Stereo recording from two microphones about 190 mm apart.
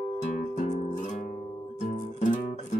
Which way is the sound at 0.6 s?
40° left (ahead or behind).